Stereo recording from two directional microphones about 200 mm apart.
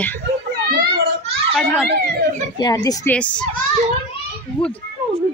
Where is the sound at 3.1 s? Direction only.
5° left (ahead or behind).